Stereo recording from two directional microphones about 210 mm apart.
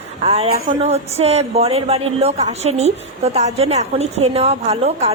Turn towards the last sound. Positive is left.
turn(degrees=-30)  # may be behind; listen again after turning